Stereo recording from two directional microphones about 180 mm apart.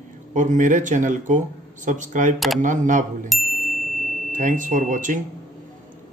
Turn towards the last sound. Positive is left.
turn(degrees=-45)  # may be behind; listen again after turning